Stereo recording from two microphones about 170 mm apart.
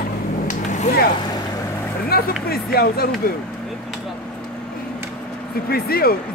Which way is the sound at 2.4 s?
65° left (ahead or behind).